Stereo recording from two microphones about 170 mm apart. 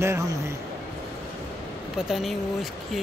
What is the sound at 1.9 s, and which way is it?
Speech, centre (ahead or behind).